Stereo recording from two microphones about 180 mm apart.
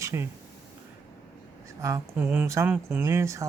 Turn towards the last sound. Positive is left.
turn(degrees=-15)  # may be behind; listen again after turning